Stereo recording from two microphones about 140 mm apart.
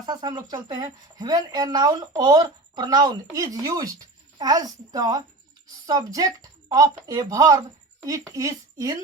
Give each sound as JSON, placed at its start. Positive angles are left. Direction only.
{"t": 0.0, "sound": "speech", "side_deg": -30}